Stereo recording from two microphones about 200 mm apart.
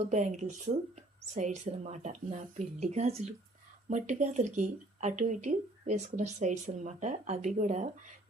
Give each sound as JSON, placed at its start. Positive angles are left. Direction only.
{"t": 0.0, "sound": "speech", "side_deg": -35}